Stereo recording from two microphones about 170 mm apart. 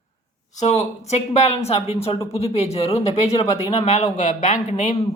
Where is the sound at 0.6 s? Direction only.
40° left (ahead or behind).